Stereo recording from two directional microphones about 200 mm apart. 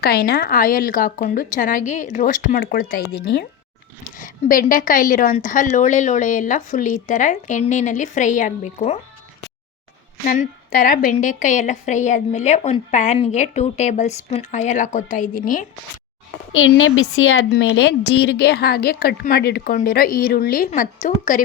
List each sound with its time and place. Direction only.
0.0 s a woman's voice: 50° left (ahead or behind); by 9.0 s 35° left (ahead or behind)
10.2 s a woman's voice: 45° left (ahead or behind)
16.6 s a woman's voice: 90° left
17.6 s a woman's voice: 60° left (ahead or behind); by 21.4 s 40° left (ahead or behind)